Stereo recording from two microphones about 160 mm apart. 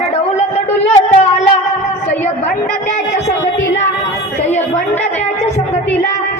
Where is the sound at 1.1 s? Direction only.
40° left (ahead or behind).